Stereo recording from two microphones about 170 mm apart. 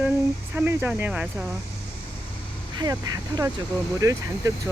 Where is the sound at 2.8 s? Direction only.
20° right (ahead or behind).